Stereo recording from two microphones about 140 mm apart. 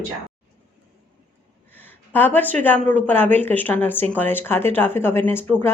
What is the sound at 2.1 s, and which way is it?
Speech, 15° left (ahead or behind).